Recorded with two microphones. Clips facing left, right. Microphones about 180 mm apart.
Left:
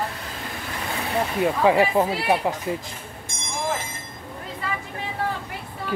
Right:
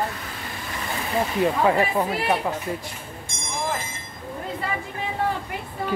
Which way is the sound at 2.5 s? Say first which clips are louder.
Left 1 dB; 15° left (ahead or behind).